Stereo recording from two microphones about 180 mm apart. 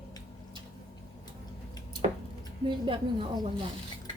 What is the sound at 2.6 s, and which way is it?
A woman's voice, 30° right (ahead or behind).